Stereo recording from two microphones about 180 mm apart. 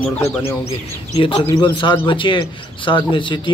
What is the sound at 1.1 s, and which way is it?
A man's voice, 25° left (ahead or behind).